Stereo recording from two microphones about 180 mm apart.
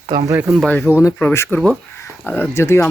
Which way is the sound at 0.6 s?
10° left (ahead or behind).